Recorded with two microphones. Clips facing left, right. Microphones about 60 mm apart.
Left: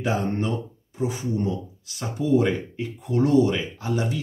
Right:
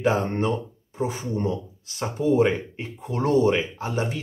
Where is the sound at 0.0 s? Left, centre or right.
Right.